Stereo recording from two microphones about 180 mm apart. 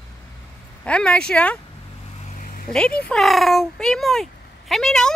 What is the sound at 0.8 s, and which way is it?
Speech, 5° left (ahead or behind).